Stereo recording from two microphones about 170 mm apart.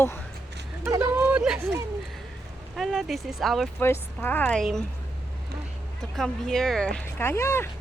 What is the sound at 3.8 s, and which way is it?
A woman's voice, 15° left (ahead or behind).